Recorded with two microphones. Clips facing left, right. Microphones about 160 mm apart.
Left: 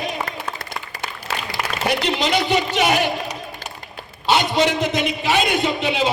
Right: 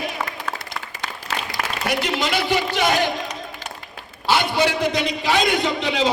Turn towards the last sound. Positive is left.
turn(degrees=15)  # may be behind; listen again after turning